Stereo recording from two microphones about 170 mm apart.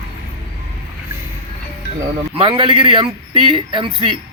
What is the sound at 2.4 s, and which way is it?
A man's voice, 30° right (ahead or behind).